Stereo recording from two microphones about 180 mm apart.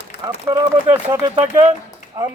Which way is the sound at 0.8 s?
10° right (ahead or behind).